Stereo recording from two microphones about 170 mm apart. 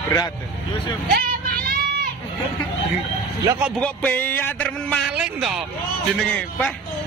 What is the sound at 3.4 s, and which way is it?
Speech, 10° right (ahead or behind).